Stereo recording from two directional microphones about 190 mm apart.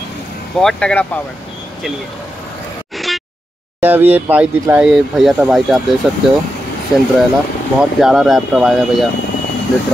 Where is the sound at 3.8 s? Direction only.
10° right (ahead or behind).